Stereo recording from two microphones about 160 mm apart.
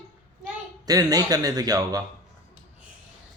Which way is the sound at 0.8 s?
25° right (ahead or behind).